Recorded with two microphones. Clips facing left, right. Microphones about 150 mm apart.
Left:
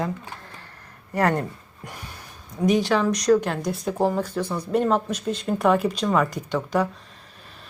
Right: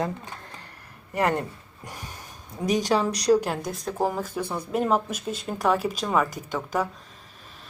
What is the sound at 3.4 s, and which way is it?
A woman's voice, centre (ahead or behind).